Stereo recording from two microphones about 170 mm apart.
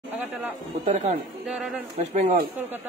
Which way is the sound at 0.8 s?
45° right (ahead or behind).